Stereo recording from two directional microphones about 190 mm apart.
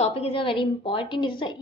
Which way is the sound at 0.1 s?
25° left (ahead or behind).